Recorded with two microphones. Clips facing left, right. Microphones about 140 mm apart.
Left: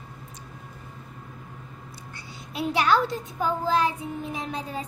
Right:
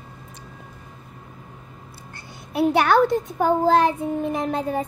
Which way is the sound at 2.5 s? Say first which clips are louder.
Right 6 dB; 55° right (ahead or behind).